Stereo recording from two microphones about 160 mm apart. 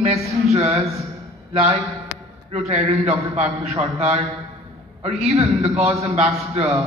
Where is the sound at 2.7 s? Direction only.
40° right (ahead or behind).